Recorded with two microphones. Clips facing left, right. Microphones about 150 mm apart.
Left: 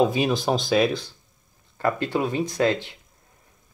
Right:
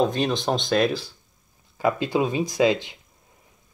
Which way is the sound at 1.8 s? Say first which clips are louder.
Right 2 dB; 10° right (ahead or behind).